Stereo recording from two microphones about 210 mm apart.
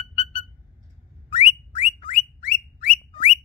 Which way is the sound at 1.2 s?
30° left (ahead or behind).